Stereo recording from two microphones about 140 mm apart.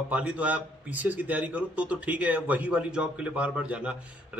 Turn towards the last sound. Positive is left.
turn(degrees=-10)  # may be behind; listen again after turning